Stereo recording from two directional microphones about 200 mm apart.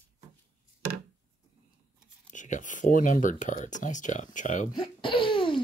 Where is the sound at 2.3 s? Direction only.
40° left (ahead or behind).